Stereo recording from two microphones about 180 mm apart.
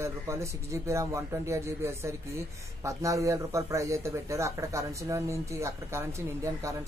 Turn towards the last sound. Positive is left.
turn(degrees=-15)  # may be behind; listen again after turning